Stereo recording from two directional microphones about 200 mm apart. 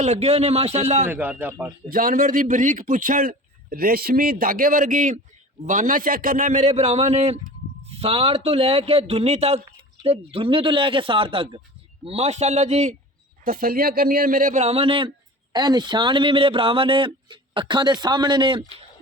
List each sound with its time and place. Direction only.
0.0 s a man's voice: 35° right (ahead or behind)
1.0 s speech: 10° right (ahead or behind)
1.9 s a man's voice: 45° right (ahead or behind)
13.4 s a man's voice: 45° right (ahead or behind); by 18.6 s 25° right (ahead or behind)